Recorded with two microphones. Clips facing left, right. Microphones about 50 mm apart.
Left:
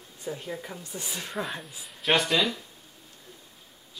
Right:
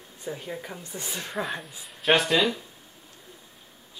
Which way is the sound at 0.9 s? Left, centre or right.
Right.